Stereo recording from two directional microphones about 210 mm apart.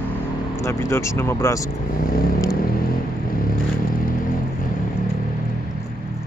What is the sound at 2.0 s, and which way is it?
Vehicle, 45° left (ahead or behind).